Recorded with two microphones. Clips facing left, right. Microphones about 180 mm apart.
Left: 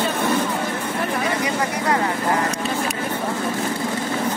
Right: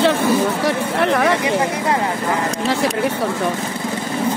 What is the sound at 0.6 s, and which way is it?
Speech, 75° right (ahead or behind).